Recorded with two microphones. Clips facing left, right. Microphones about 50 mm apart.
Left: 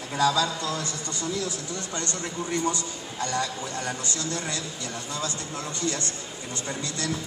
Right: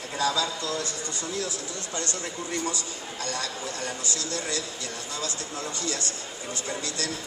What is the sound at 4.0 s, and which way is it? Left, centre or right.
Speech, left.